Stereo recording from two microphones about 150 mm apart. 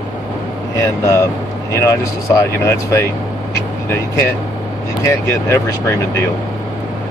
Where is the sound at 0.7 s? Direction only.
20° left (ahead or behind).